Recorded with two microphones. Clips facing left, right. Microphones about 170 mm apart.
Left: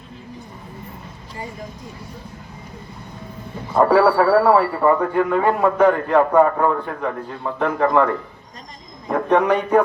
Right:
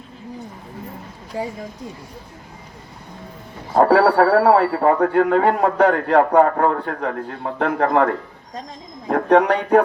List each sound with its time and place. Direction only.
1.4 s speech: 90° right
3.8 s a man's voice: 65° right (ahead or behind)
6.7 s a man's voice: 55° right (ahead or behind)